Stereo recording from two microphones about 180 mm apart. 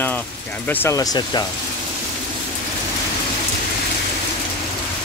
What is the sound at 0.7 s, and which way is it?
Speech, 15° left (ahead or behind).